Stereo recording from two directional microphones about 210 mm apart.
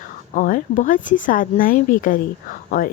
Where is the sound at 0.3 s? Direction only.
40° left (ahead or behind).